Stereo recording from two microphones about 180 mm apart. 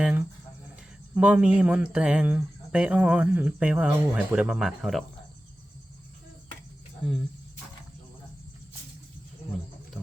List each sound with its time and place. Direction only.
0.0 s cricket: 5° right (ahead or behind)
1.1 s speech: 5° right (ahead or behind)